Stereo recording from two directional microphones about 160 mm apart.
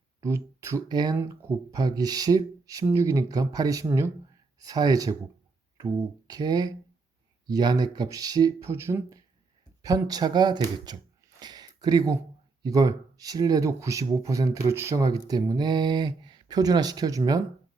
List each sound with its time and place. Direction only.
0.2 s speech: 20° right (ahead or behind)
1.2 s speech: 15° right (ahead or behind)
11.3 s a sound: 25° right (ahead or behind)
12.6 s speech: 20° right (ahead or behind)